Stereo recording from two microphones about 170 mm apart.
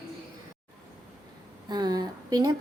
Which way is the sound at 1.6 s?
25° right (ahead or behind).